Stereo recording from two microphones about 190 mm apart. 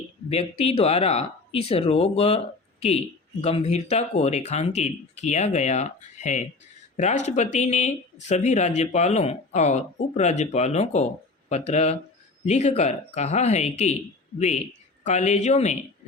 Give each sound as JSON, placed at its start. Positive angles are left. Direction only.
{"t": 0.3, "sound": "speech", "side_deg": 30}
{"t": 3.4, "sound": "speech", "side_deg": 35}